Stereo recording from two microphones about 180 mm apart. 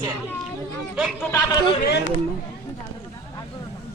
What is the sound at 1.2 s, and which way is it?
Speech, 15° left (ahead or behind).